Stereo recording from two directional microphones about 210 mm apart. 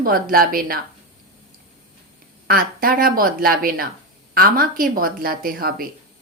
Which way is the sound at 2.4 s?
45° right (ahead or behind).